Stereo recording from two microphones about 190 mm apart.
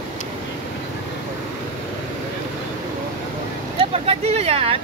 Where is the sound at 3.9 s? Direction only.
30° right (ahead or behind).